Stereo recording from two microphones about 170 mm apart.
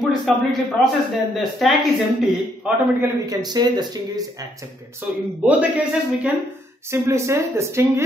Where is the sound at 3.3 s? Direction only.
25° right (ahead or behind).